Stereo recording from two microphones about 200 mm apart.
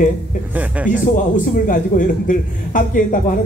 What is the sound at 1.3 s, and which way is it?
Speech, 40° left (ahead or behind).